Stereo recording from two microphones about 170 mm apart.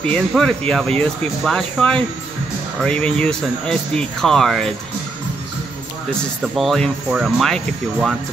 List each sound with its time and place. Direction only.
0.0 s speech: 5° left (ahead or behind)
6.4 s speech: centre (ahead or behind)